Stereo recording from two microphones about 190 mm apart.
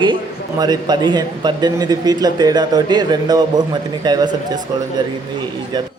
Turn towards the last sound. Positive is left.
turn(degrees=-20)  # may be behind; listen again after turning